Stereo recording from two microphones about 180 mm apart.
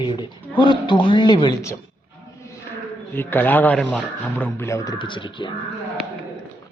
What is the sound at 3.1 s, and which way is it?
Speech, 10° left (ahead or behind).